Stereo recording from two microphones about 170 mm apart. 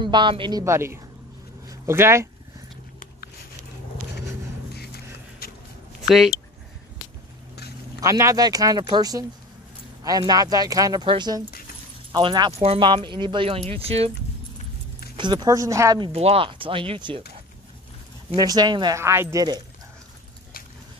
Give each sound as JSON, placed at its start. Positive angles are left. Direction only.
{"t": 0.0, "sound": "speech", "side_deg": -30}
{"t": 4.7, "sound": "music", "side_deg": 70}
{"t": 6.0, "sound": "speech", "side_deg": 0}
{"t": 8.0, "sound": "speech", "side_deg": -20}
{"t": 15.1, "sound": "speech", "side_deg": -25}
{"t": 16.1, "sound": "speech", "side_deg": -35}
{"t": 18.3, "sound": "speech", "side_deg": -25}